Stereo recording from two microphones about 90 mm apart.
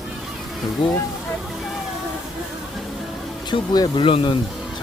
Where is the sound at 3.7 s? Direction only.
50° left (ahead or behind).